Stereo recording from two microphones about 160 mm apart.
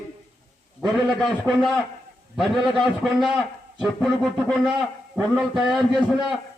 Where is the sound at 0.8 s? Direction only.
Centre (ahead or behind).